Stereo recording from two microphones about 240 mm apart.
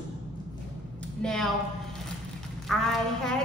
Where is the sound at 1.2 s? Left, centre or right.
Centre.